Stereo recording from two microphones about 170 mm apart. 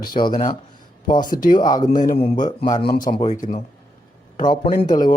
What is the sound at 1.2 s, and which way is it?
Speech, 55° left (ahead or behind).